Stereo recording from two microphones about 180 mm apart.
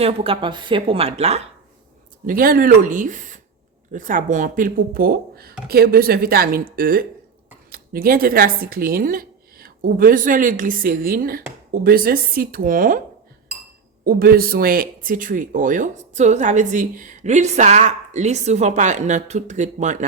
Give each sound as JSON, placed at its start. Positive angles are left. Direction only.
{"t": 0.0, "sound": "speech", "side_deg": -30}
{"t": 2.2, "sound": "speech", "side_deg": -55}
{"t": 14.0, "sound": "speech", "side_deg": -55}